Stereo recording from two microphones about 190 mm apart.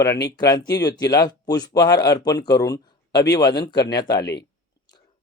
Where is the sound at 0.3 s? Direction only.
20° left (ahead or behind).